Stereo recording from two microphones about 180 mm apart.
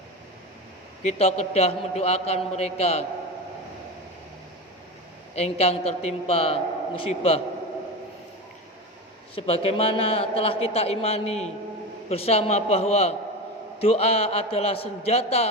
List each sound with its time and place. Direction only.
1.0 s a man's voice: 35° left (ahead or behind)
5.3 s a man's voice: 35° left (ahead or behind)
9.3 s a man's voice: 30° left (ahead or behind)